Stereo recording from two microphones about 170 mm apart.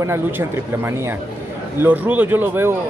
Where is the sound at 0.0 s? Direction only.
15° right (ahead or behind).